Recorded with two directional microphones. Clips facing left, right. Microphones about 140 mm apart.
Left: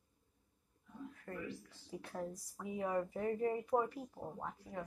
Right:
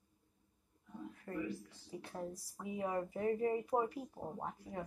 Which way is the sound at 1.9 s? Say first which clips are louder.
Left 1 dB; centre (ahead or behind).